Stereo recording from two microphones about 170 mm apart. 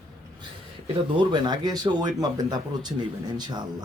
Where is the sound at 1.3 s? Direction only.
25° right (ahead or behind).